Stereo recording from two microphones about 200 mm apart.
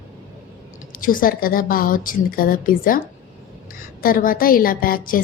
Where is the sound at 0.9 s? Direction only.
45° left (ahead or behind).